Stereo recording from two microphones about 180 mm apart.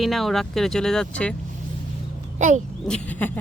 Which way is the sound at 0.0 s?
Centre (ahead or behind).